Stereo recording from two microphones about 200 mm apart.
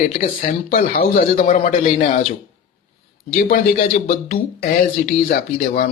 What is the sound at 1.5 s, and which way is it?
Speech, 40° left (ahead or behind).